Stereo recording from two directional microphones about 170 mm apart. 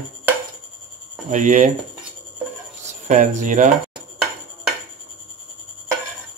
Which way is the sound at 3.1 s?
45° right (ahead or behind).